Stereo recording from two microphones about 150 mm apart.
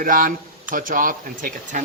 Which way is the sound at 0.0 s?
65° right (ahead or behind).